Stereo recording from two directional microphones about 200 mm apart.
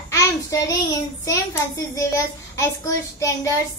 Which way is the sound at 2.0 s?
15° left (ahead or behind).